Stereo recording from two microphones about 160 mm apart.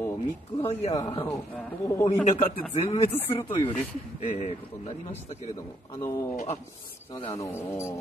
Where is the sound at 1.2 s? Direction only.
15° left (ahead or behind).